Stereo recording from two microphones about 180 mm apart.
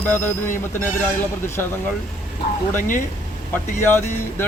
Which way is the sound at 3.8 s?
15° left (ahead or behind).